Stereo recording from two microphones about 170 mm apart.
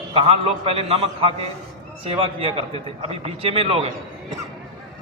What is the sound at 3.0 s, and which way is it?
Speech, 35° right (ahead or behind).